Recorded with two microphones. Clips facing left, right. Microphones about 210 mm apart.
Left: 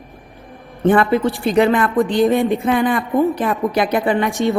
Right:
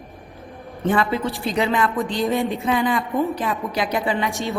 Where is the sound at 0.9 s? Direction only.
55° left (ahead or behind).